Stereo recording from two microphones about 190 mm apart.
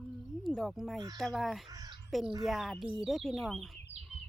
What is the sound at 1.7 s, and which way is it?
Crow, 20° right (ahead or behind).